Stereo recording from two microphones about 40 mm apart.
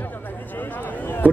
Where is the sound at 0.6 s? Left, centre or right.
Left.